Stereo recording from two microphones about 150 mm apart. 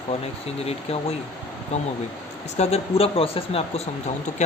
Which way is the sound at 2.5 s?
45° left (ahead or behind).